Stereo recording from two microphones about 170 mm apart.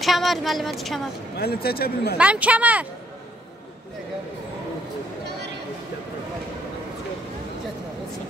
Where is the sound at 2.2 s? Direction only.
10° right (ahead or behind).